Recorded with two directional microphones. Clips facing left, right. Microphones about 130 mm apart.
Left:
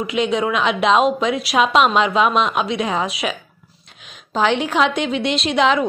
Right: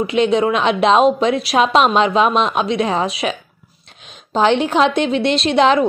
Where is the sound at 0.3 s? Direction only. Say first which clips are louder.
Right 3 dB; 25° right (ahead or behind).